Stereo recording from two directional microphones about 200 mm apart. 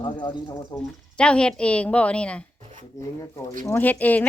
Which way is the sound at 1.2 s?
5° left (ahead or behind).